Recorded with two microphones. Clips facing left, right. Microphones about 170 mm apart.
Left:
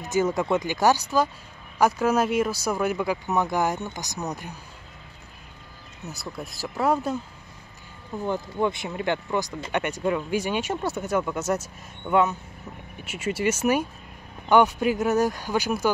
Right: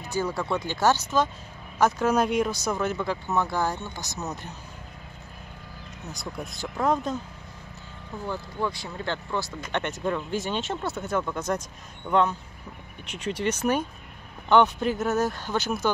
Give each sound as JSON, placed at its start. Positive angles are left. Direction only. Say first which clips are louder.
{"t": 0.0, "sound": "speech", "louder": "left 5 dB", "side_deg": 20}
{"t": 6.1, "sound": "speech", "louder": "right 1 dB", "side_deg": 0}
{"t": 8.3, "sound": "speech", "louder": "left 5 dB", "side_deg": 20}